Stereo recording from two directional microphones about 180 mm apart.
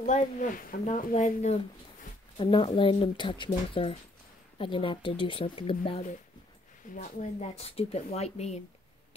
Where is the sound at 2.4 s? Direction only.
25° left (ahead or behind).